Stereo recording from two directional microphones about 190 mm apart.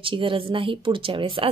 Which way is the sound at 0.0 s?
25° right (ahead or behind).